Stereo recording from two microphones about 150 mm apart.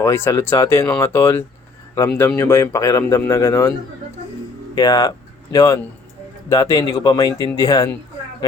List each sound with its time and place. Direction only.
0.0 s speech: 15° left (ahead or behind)